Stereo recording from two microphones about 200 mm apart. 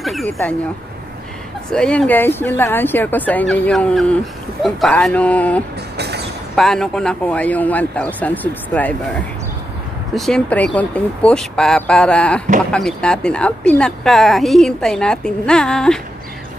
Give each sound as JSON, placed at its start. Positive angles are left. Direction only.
{"t": 0.0, "sound": "a woman's voice", "side_deg": 0}
{"t": 1.7, "sound": "speech", "side_deg": 5}
{"t": 5.9, "sound": "vehicle", "side_deg": -55}
{"t": 6.5, "sound": "speech", "side_deg": 0}
{"t": 10.1, "sound": "a woman's voice", "side_deg": 0}